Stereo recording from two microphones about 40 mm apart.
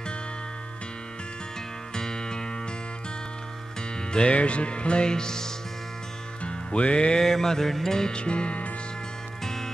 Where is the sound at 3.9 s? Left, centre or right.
Left.